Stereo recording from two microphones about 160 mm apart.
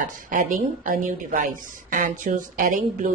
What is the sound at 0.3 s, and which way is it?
A woman's voice, 55° right (ahead or behind).